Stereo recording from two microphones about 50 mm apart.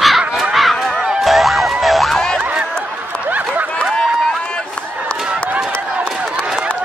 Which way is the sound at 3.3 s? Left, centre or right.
Right.